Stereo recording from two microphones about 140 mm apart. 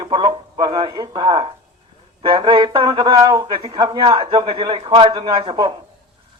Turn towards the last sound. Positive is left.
turn(degrees=-30)  # may be behind; listen again after turning